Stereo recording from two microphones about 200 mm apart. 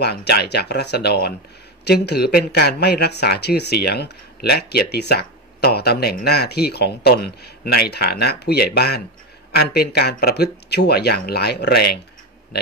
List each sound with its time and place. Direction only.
0.0 s speech: 55° left (ahead or behind)